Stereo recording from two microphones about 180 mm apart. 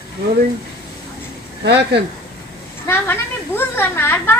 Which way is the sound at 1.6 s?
70° right (ahead or behind).